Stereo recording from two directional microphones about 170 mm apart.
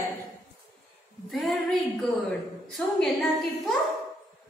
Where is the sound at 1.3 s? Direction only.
Centre (ahead or behind).